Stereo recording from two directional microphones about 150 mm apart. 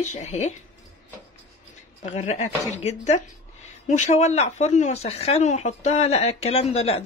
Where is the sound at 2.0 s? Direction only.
45° left (ahead or behind).